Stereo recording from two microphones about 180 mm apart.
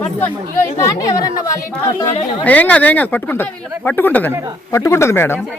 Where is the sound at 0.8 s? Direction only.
20° left (ahead or behind).